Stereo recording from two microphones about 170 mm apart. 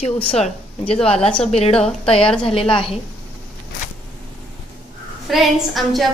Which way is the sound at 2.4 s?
30° left (ahead or behind).